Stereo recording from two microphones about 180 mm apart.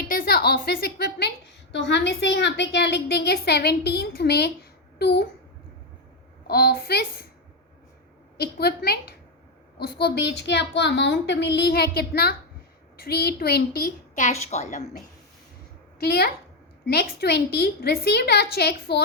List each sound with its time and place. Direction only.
0.0 s a woman's voice: 50° left (ahead or behind)
1.7 s a woman's voice: 75° left (ahead or behind)
6.5 s a woman's voice: 60° left (ahead or behind)
8.4 s a woman's voice: 60° left (ahead or behind)
14.3 s a woman's voice: 40° left (ahead or behind)
16.0 s a woman's voice: 60° left (ahead or behind)